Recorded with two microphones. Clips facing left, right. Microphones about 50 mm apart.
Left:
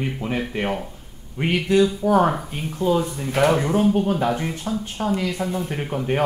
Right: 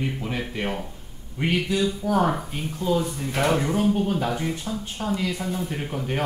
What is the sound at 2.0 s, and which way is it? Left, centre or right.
Speech, left.